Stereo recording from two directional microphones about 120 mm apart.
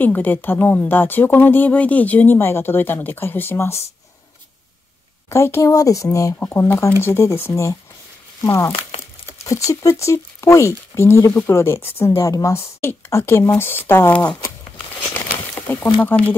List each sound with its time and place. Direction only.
0.0 s a woman's voice: 15° left (ahead or behind)
5.3 s speech: 25° left (ahead or behind)
9.7 s speech: 25° left (ahead or behind)